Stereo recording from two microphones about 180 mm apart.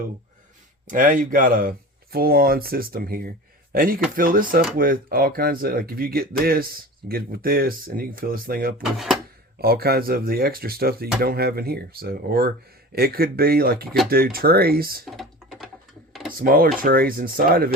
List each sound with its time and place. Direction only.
0.9 s speech: 50° right (ahead or behind)
8.8 s speech: centre (ahead or behind)
9.6 s speech: 60° right (ahead or behind)
15.0 s typing: centre (ahead or behind)
16.4 s speech: 55° right (ahead or behind)